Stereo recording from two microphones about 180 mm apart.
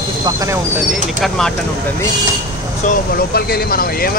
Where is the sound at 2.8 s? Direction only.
60° left (ahead or behind).